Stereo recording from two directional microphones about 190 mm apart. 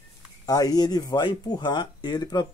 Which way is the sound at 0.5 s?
20° left (ahead or behind).